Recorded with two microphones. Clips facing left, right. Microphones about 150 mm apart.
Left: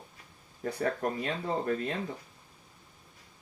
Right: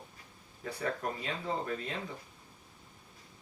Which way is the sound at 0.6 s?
45° left (ahead or behind).